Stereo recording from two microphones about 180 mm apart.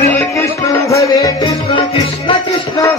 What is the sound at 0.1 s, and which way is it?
Music, 15° left (ahead or behind).